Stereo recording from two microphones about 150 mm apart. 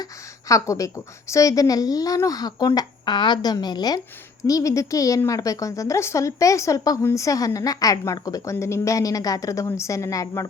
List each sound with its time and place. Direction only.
0.0 s a woman's voice: 20° left (ahead or behind)